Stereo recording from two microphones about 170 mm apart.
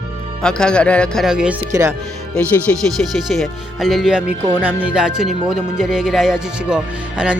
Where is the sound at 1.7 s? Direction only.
20° right (ahead or behind).